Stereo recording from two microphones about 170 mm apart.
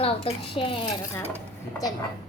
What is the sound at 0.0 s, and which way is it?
Speech, 35° left (ahead or behind).